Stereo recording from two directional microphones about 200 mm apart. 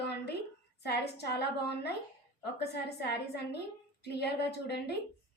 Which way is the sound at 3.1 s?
55° left (ahead or behind).